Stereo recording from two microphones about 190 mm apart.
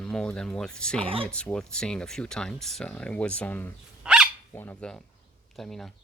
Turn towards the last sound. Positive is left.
turn(degrees=0)  # may be behind; listen again after turning